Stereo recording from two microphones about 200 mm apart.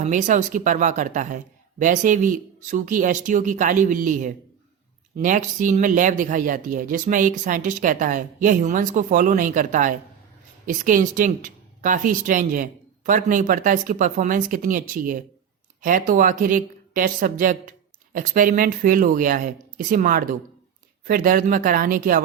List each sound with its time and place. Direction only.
0.0 s a woman's voice: 40° right (ahead or behind)